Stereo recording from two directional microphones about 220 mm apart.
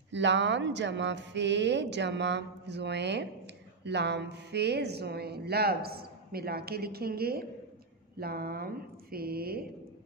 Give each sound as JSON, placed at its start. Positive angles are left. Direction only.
{"t": 0.1, "sound": "speech", "side_deg": -55}